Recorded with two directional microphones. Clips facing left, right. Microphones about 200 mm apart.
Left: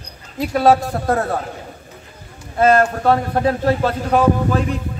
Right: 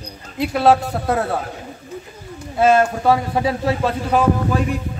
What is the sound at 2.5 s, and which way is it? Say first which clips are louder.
A man's voice: left 1 dB; 5° right (ahead or behind).